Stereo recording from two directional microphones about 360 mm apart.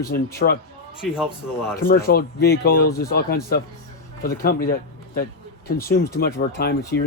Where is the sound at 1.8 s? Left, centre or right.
Left.